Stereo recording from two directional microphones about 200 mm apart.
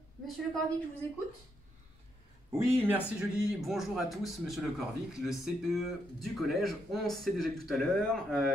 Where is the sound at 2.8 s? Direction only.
5° right (ahead or behind).